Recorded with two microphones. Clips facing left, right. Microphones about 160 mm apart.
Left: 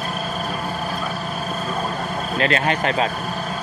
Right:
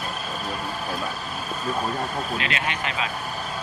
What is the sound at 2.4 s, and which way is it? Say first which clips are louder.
Speech: left 8 dB; 40° left (ahead or behind).